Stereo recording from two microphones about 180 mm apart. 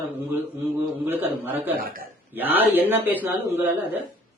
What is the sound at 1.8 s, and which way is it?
Speech, 55° right (ahead or behind).